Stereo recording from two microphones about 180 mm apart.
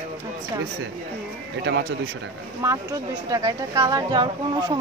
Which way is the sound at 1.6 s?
70° right (ahead or behind).